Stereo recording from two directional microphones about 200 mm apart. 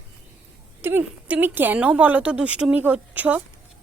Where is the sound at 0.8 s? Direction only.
10° right (ahead or behind).